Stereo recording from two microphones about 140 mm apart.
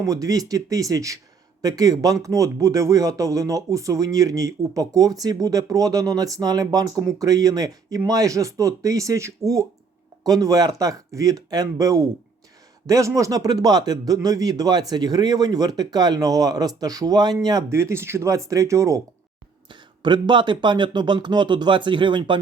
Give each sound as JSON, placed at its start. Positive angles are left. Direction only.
{"t": 0.0, "sound": "speech", "side_deg": -25}
{"t": 19.7, "sound": "speech", "side_deg": -35}